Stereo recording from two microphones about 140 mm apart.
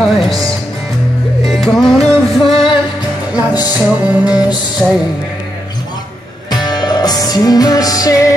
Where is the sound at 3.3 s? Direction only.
30° left (ahead or behind).